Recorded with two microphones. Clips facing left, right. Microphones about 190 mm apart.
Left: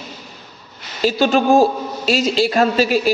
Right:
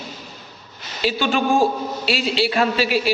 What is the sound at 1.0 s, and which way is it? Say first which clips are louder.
A woman's voice: left 5 dB; 40° left (ahead or behind).